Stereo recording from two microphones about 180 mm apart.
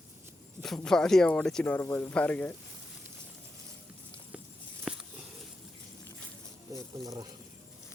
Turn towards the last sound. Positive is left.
turn(degrees=-20)  # may be behind; listen again after turning